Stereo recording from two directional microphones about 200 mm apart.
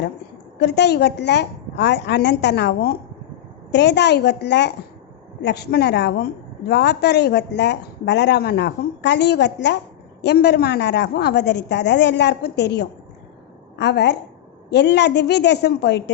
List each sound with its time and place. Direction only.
0.6 s a woman's voice: 55° left (ahead or behind)